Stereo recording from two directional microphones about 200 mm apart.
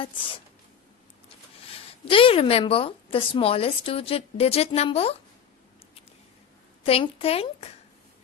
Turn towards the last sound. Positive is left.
turn(degrees=30)  # may be behind; listen again after turning